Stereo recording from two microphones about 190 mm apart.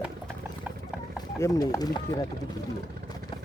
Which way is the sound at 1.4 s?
20° left (ahead or behind).